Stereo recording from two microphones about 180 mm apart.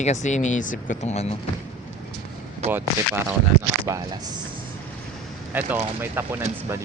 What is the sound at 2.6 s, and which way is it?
Speech, 35° right (ahead or behind).